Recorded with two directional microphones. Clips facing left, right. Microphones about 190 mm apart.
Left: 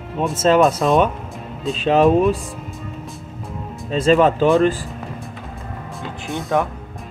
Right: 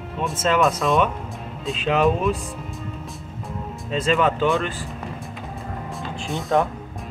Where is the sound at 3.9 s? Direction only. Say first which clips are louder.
Left 6 dB; 40° left (ahead or behind).